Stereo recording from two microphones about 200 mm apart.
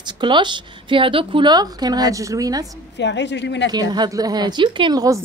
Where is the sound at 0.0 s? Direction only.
25° right (ahead or behind).